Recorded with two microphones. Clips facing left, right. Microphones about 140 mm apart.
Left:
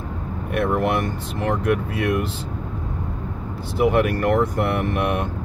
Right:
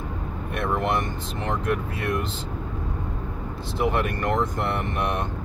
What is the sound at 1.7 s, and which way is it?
Speech, 65° left (ahead or behind).